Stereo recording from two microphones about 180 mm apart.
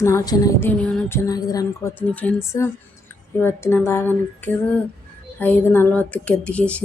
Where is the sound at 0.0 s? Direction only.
15° left (ahead or behind).